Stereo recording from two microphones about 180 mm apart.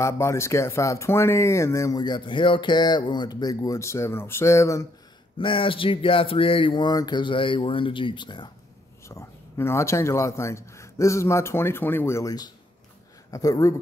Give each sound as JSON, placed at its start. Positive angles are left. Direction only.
{"t": 0.0, "sound": "speech", "side_deg": 15}
{"t": 5.4, "sound": "speech", "side_deg": 30}
{"t": 9.0, "sound": "speech", "side_deg": 15}